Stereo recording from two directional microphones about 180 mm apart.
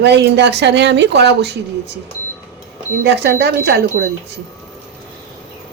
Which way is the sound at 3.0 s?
70° right (ahead or behind).